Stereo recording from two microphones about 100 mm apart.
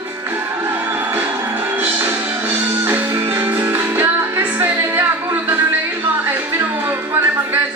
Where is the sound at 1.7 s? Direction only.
20° right (ahead or behind).